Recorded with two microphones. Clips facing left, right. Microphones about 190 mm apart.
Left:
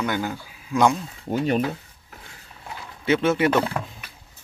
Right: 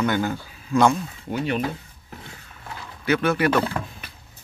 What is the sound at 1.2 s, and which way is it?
Speech, 40° left (ahead or behind).